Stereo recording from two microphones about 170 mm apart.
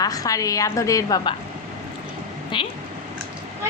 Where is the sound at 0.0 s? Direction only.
20° left (ahead or behind).